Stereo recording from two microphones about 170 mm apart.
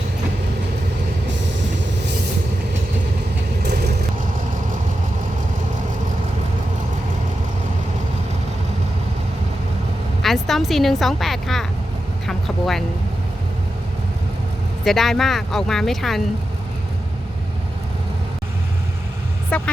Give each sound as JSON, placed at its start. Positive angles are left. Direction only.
{"t": 3.6, "sound": "vehicle", "side_deg": -70}
{"t": 10.2, "sound": "a woman's voice", "side_deg": 0}
{"t": 12.3, "sound": "vehicle", "side_deg": 0}
{"t": 14.8, "sound": "a woman's voice", "side_deg": 0}
{"t": 19.5, "sound": "speech", "side_deg": 10}